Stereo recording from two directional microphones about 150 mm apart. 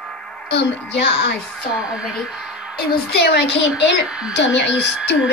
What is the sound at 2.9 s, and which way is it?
Speech, 90° left.